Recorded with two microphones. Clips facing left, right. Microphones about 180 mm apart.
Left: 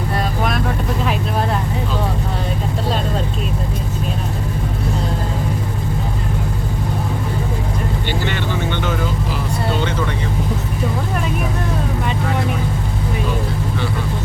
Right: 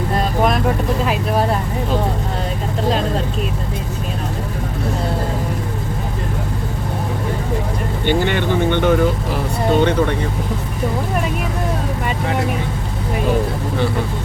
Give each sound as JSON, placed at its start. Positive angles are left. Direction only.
{"t": 8.0, "sound": "vehicle", "side_deg": -50}